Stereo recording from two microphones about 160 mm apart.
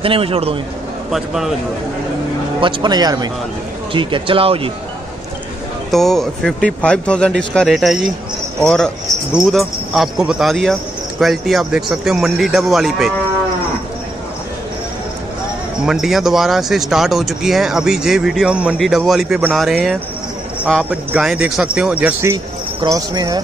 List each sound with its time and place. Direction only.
0.0 s speech: 35° right (ahead or behind)
1.1 s speech: centre (ahead or behind)
2.6 s speech: 25° right (ahead or behind)
5.9 s speech: centre (ahead or behind)
15.8 s speech: centre (ahead or behind); by 23.4 s 25° right (ahead or behind)